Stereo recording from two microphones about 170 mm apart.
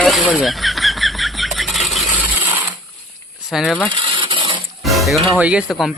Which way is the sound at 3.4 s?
5° right (ahead or behind).